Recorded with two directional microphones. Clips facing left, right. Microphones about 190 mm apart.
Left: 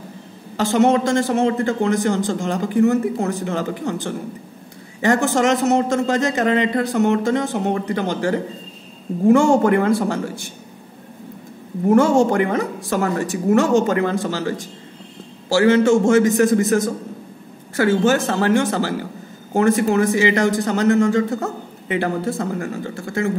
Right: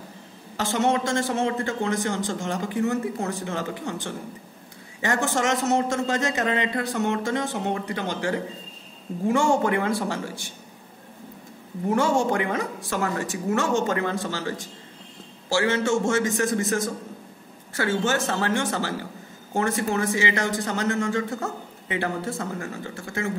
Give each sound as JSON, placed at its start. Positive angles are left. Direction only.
{"t": 0.6, "sound": "a man's voice", "side_deg": 40}
{"t": 11.9, "sound": "speech", "side_deg": 45}
{"t": 15.5, "sound": "speech", "side_deg": 35}